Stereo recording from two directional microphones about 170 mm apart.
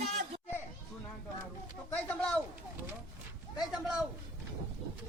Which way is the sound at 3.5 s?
5° right (ahead or behind).